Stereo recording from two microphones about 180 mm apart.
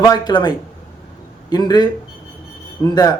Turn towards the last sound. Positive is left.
turn(degrees=20)  # may be behind; listen again after turning